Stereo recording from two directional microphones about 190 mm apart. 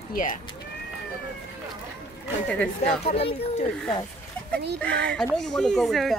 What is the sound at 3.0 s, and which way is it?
Speech, 30° left (ahead or behind).